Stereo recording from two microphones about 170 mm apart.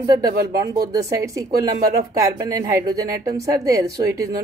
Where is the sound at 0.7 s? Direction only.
20° right (ahead or behind).